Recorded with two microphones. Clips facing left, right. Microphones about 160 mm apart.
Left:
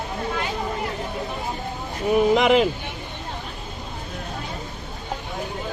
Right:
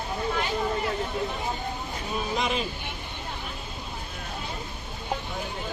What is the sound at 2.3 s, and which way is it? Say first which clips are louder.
Speech: left 11 dB; 90° left.